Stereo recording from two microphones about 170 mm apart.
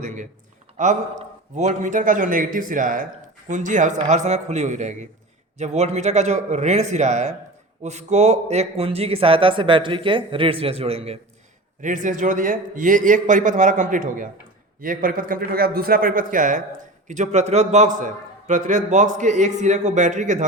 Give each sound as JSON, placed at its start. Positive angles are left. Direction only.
{"t": 1.5, "sound": "a man's voice", "side_deg": -45}
{"t": 11.8, "sound": "a man's voice", "side_deg": -50}